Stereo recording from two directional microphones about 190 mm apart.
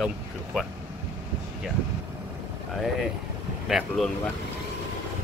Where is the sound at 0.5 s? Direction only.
5° right (ahead or behind).